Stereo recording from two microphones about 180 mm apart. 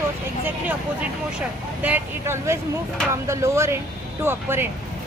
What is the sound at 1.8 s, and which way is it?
A woman's voice, 10° right (ahead or behind).